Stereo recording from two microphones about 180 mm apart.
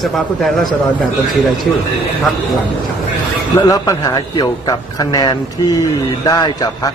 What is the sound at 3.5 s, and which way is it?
A man's voice, 20° left (ahead or behind).